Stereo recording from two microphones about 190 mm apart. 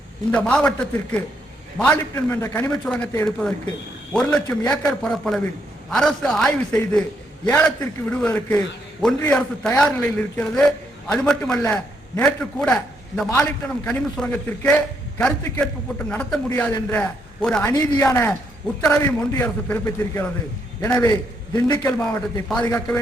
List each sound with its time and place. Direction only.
0.3 s a man's voice: 5° left (ahead or behind)
4.1 s a man's voice: 5° left (ahead or behind)
21.9 s a man's voice: 5° left (ahead or behind)